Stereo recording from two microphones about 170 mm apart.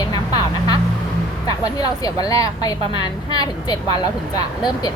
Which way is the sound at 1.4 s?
25° left (ahead or behind).